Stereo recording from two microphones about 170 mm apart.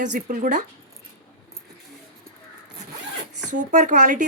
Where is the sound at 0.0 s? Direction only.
50° right (ahead or behind).